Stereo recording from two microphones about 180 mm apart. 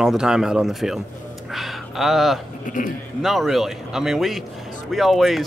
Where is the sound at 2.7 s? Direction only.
45° left (ahead or behind).